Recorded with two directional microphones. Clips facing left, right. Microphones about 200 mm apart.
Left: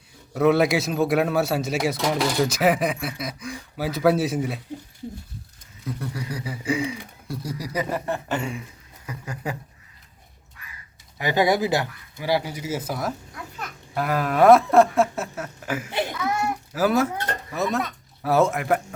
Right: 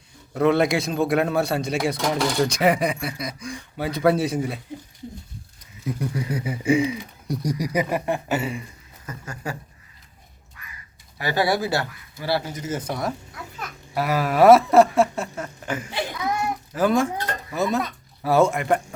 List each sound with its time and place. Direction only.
0.3 s speech: 5° left (ahead or behind)
5.8 s speech: 20° right (ahead or behind); by 8.6 s 5° right (ahead or behind)
9.0 s speech: 15° left (ahead or behind)
11.2 s speech: 15° left (ahead or behind); by 18.9 s centre (ahead or behind)